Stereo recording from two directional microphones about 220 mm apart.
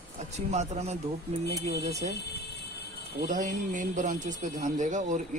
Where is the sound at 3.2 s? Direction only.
35° right (ahead or behind).